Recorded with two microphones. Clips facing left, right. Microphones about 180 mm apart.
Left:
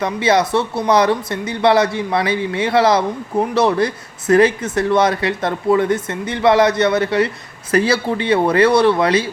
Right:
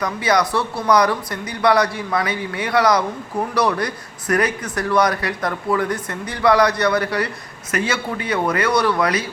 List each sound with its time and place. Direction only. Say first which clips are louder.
0.0 s speech: left 3 dB; 25° left (ahead or behind)